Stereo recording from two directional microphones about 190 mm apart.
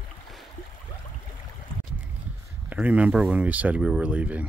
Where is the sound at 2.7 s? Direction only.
5° right (ahead or behind).